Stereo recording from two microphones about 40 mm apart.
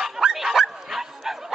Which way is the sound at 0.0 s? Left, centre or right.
Centre.